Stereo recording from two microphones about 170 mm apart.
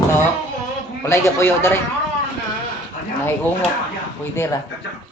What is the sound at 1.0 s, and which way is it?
Speech, 15° left (ahead or behind).